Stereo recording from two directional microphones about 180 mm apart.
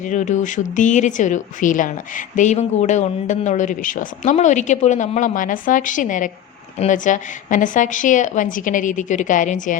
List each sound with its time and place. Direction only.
0.1 s a woman's voice: 40° left (ahead or behind)